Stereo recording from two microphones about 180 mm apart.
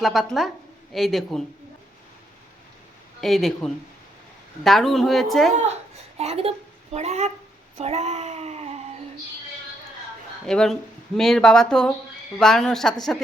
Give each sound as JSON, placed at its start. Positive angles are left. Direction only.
{"t": 0.0, "sound": "speech", "side_deg": 0}
{"t": 3.2, "sound": "speech", "side_deg": 0}
{"t": 6.1, "sound": "speech", "side_deg": -35}
{"t": 10.4, "sound": "speech", "side_deg": 5}